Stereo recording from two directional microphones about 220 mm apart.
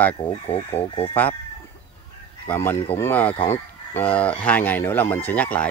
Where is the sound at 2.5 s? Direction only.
10° left (ahead or behind).